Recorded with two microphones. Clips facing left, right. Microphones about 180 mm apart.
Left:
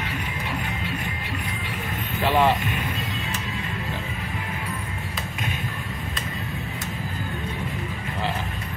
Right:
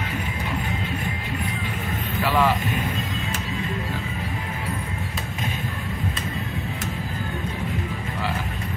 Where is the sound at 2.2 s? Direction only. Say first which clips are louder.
Left 1 dB; 25° left (ahead or behind).